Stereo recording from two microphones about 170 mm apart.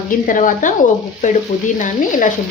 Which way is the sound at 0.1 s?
50° left (ahead or behind).